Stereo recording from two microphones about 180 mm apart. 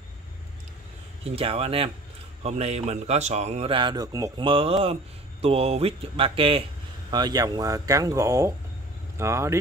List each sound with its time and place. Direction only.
1.2 s a man's voice: 35° right (ahead or behind); by 9.6 s 15° right (ahead or behind)